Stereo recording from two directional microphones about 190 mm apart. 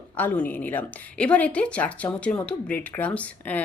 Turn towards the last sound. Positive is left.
turn(degrees=10)  # may be behind; listen again after turning